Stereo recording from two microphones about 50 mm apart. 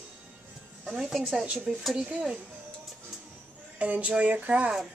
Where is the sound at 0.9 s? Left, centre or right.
Centre.